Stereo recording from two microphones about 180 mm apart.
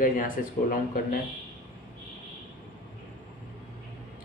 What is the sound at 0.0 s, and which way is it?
Speech, 50° left (ahead or behind).